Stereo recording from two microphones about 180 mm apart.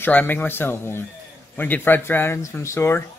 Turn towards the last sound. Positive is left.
turn(degrees=15)  # may be behind; listen again after turning